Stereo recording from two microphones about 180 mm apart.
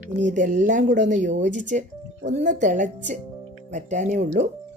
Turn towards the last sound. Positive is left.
turn(degrees=-45)  # may be behind; listen again after turning